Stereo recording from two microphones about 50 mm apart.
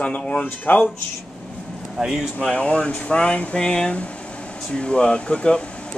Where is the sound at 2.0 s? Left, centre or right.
Centre.